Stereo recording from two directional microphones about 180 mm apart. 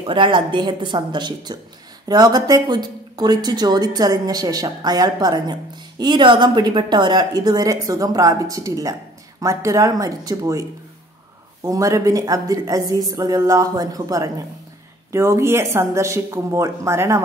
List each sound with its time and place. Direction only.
0.0 s speech: 25° right (ahead or behind)